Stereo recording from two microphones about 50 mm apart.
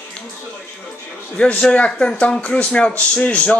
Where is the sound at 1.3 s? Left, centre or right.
Left.